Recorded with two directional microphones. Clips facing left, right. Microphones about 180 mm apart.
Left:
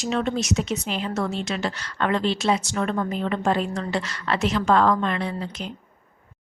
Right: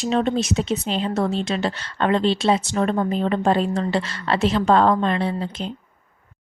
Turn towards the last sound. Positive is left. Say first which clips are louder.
# right 4 dB
turn(degrees=-30)  # may be behind; listen again after turning